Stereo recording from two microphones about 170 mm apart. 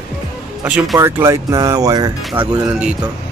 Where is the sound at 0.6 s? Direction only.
10° right (ahead or behind).